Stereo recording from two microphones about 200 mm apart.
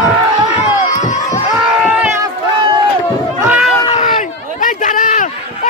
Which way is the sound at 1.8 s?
5° right (ahead or behind).